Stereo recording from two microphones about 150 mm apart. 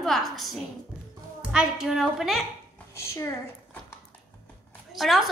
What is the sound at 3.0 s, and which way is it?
Speech, 20° left (ahead or behind).